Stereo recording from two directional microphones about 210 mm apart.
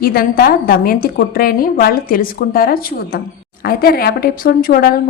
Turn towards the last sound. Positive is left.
turn(degrees=45)  # may be behind; listen again after turning